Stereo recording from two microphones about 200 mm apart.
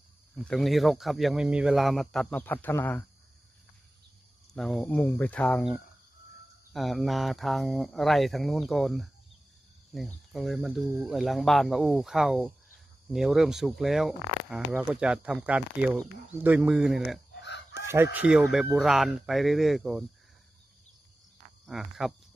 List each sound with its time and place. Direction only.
0.4 s speech: centre (ahead or behind)
4.6 s speech: centre (ahead or behind)
17.4 s chicken: 60° left (ahead or behind)
17.8 s speech: 10° right (ahead or behind)
21.6 s speech: centre (ahead or behind)